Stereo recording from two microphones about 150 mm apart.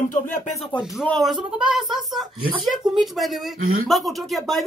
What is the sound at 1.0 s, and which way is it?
Speech, centre (ahead or behind).